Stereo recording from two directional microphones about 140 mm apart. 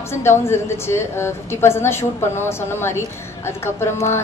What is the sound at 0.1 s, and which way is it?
A woman's voice, 20° left (ahead or behind).